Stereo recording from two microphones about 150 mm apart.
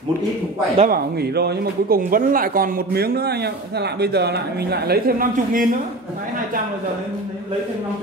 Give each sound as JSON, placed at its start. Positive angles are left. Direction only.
{"t": 0.8, "sound": "speech", "side_deg": -85}